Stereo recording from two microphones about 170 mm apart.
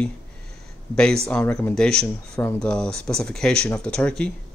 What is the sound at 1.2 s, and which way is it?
Speech, 5° left (ahead or behind).